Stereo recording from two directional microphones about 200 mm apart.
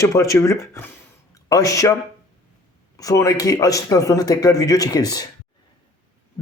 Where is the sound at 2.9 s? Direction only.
15° left (ahead or behind).